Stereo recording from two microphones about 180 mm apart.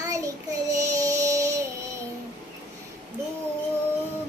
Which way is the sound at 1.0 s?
20° right (ahead or behind).